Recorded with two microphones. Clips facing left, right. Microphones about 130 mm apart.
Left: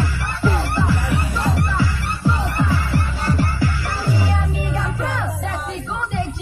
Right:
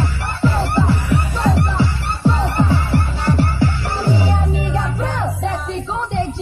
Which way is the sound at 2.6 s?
30° right (ahead or behind).